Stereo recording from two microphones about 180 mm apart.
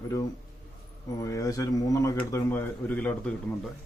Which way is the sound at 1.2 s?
20° left (ahead or behind).